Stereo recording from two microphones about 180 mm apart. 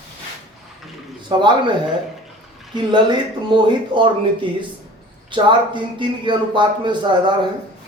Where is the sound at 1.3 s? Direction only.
25° right (ahead or behind).